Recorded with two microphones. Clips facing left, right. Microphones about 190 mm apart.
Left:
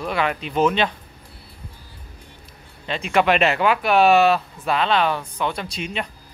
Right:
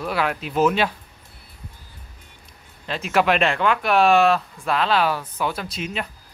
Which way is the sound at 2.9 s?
Centre (ahead or behind).